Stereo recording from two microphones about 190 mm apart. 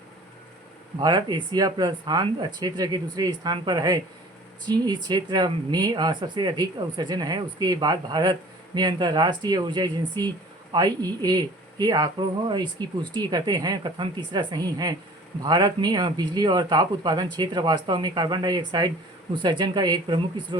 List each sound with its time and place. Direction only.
0.9 s speech: 20° right (ahead or behind)